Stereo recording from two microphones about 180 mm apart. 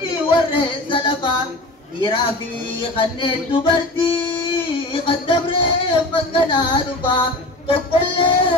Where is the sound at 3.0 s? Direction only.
30° left (ahead or behind).